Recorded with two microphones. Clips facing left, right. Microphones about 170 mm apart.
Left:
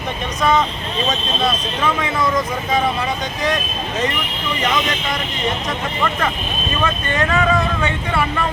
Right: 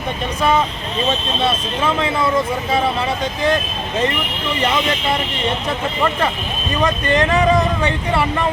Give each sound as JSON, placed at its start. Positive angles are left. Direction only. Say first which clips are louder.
{"t": 4.6, "sound": "speech", "louder": "right 2 dB", "side_deg": -30}
{"t": 6.8, "sound": "speech", "louder": "right 5 dB", "side_deg": -35}